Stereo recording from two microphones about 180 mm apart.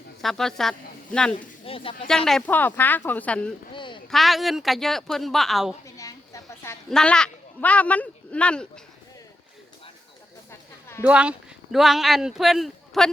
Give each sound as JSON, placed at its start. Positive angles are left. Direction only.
{"t": 0.2, "sound": "speech", "side_deg": 0}
{"t": 1.6, "sound": "speech", "side_deg": 30}
{"t": 2.0, "sound": "a woman's voice", "side_deg": 0}
{"t": 3.8, "sound": "speech", "side_deg": 25}
{"t": 4.1, "sound": "speech", "side_deg": 0}
{"t": 5.8, "sound": "a sound", "side_deg": 20}
{"t": 6.9, "sound": "speech", "side_deg": 5}
{"t": 11.0, "sound": "speech", "side_deg": -5}